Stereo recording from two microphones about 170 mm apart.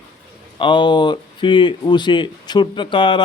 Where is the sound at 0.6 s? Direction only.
30° left (ahead or behind).